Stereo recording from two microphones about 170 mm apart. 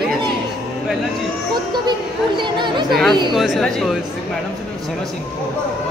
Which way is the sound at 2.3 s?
25° right (ahead or behind).